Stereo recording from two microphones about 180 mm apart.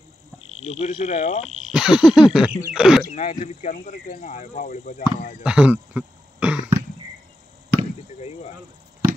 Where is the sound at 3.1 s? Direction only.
40° left (ahead or behind).